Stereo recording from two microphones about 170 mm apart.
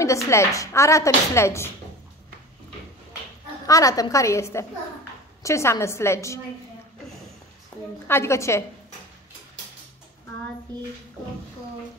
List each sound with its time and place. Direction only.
0.0 s a woman's voice: 20° left (ahead or behind)
3.6 s a woman's voice: 20° left (ahead or behind)
7.7 s a sound: 15° left (ahead or behind)
8.1 s a woman's voice: 15° left (ahead or behind)